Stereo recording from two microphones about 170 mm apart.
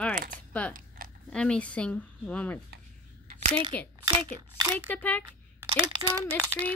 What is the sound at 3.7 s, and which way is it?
A woman's voice, 5° left (ahead or behind).